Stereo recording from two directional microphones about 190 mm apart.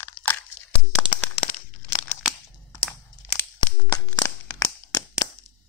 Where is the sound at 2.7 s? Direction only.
15° left (ahead or behind).